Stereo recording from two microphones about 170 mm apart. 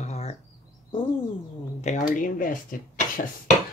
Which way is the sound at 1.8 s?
45° left (ahead or behind).